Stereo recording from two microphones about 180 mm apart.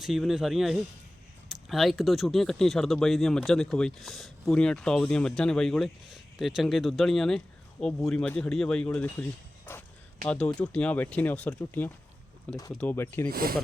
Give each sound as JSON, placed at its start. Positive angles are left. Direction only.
{"t": 0.0, "sound": "speech", "side_deg": 0}
{"t": 13.3, "sound": "speech", "side_deg": -55}